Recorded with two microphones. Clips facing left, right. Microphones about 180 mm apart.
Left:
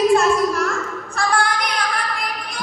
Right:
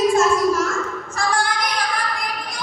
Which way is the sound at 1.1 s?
60° left (ahead or behind).